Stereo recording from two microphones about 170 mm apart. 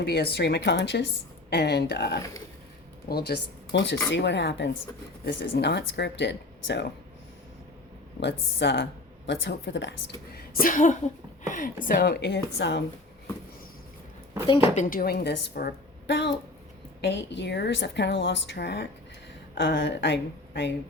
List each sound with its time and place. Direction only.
0.3 s a woman's voice: 80° left
5.2 s a woman's voice: 75° left (ahead or behind); by 6.8 s 90° left
8.2 s a woman's voice: 90° left
10.3 s a sound: 55° left (ahead or behind)
11.4 s speech: 50° left (ahead or behind); by 12.8 s 85° left
14.8 s a woman's voice: 55° left (ahead or behind); by 20.7 s 90° left